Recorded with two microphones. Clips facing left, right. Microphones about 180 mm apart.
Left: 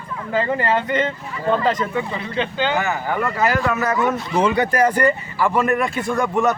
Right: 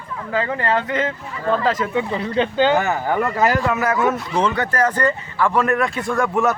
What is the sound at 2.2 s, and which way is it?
Speech, 40° right (ahead or behind).